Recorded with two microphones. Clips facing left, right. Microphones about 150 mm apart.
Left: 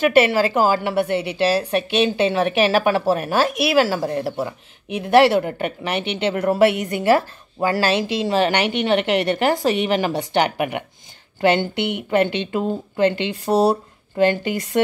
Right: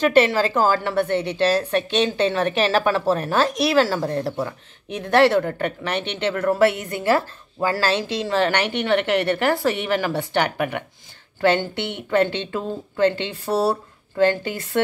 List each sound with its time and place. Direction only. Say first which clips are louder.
0.0 s a woman's voice: left 1 dB; 10° left (ahead or behind)